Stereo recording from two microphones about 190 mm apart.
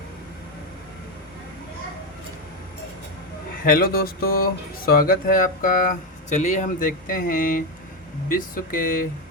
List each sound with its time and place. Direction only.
3.6 s speech: 50° left (ahead or behind)